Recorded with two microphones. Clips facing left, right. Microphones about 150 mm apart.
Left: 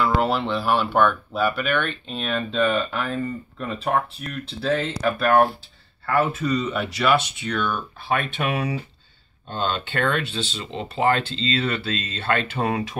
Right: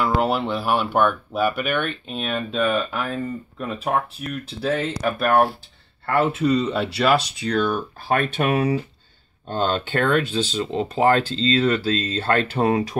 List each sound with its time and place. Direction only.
0.0 s speech: 10° right (ahead or behind)
6.1 s speech: 30° right (ahead or behind)